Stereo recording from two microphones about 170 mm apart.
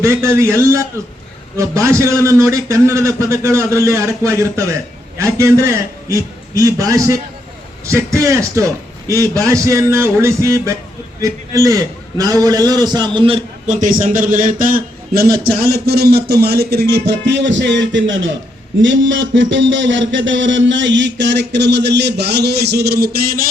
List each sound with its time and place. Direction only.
0.0 s a man's voice: 15° right (ahead or behind)
13.7 s a man's voice: 50° right (ahead or behind); by 18.3 s 90° right
18.8 s a sound: 90° right; by 23.5 s 60° right (ahead or behind)